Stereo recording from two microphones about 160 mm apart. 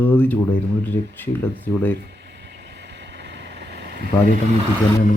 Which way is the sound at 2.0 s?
90° right.